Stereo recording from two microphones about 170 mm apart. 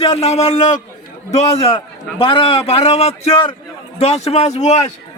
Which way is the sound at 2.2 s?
30° left (ahead or behind).